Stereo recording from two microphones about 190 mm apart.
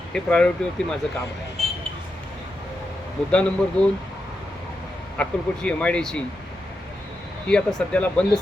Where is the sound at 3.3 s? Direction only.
5° left (ahead or behind).